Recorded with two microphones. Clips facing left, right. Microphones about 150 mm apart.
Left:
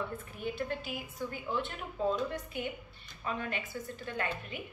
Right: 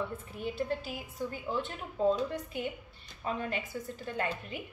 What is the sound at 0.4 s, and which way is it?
A woman's voice, 35° right (ahead or behind).